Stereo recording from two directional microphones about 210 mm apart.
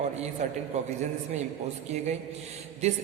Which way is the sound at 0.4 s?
35° right (ahead or behind).